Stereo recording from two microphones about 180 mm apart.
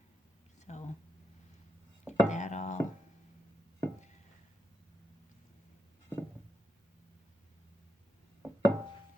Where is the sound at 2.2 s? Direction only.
40° left (ahead or behind).